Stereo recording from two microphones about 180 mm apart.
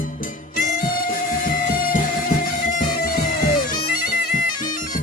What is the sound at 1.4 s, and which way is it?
Music, 50° left (ahead or behind).